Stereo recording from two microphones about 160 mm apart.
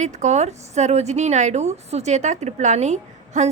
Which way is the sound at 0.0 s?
45° right (ahead or behind).